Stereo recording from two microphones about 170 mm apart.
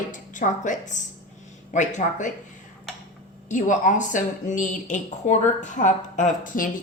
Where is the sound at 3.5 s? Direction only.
50° left (ahead or behind).